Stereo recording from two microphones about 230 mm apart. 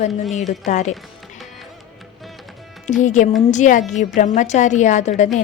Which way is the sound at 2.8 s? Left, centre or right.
Left.